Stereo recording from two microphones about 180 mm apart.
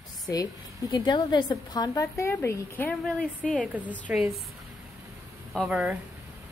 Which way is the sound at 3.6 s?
10° right (ahead or behind).